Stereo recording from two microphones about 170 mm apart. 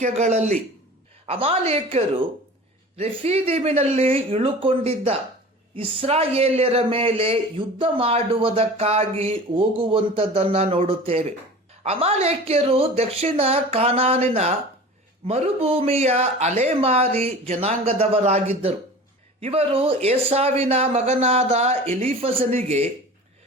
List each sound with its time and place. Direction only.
0.0 s a man's voice: 45° right (ahead or behind)